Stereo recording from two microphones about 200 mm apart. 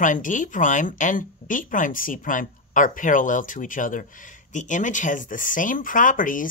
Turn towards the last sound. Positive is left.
turn(degrees=40)  # may be behind; listen again after turning